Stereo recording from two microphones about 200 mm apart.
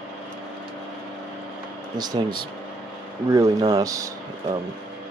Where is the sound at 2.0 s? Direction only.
20° right (ahead or behind).